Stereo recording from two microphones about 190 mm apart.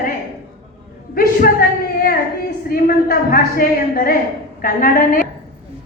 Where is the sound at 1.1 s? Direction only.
50° left (ahead or behind).